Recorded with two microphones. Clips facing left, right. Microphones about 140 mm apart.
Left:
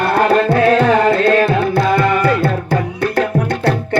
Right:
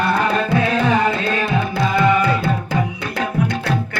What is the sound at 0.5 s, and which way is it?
Carnatic music, 55° left (ahead or behind).